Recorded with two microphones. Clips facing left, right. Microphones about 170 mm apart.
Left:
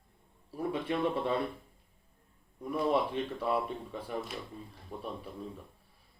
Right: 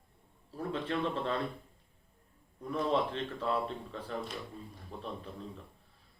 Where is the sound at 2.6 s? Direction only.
10° left (ahead or behind).